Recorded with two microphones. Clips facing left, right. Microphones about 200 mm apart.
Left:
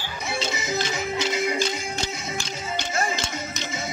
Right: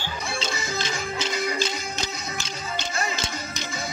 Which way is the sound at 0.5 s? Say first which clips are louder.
Left 2 dB; 20° left (ahead or behind).